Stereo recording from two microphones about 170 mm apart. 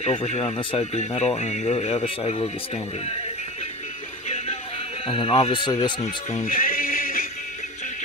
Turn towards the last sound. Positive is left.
turn(degrees=55)  # may be behind; listen again after turning